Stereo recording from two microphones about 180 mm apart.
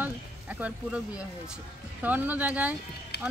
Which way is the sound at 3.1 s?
70° left (ahead or behind).